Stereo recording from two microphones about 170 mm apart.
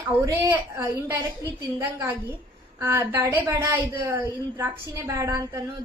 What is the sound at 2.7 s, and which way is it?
A woman's voice, 15° right (ahead or behind).